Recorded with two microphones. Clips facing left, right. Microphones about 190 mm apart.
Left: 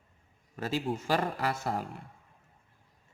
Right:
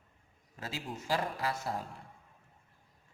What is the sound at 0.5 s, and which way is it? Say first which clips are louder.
Speech: left 9 dB; 65° left (ahead or behind).